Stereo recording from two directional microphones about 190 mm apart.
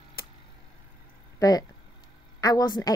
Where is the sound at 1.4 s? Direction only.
20° left (ahead or behind).